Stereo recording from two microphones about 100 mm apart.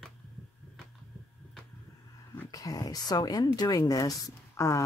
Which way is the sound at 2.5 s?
35° left (ahead or behind).